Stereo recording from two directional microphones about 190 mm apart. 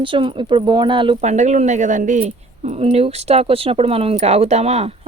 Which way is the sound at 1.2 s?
40° right (ahead or behind).